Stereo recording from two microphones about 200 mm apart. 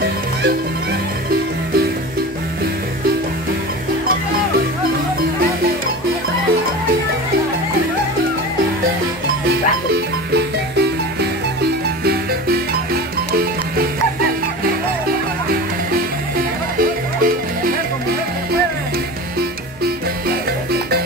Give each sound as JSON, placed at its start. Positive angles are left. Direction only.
{"t": 12.0, "sound": "music", "side_deg": -50}
{"t": 16.8, "sound": "music", "side_deg": -45}
{"t": 19.8, "sound": "music", "side_deg": -50}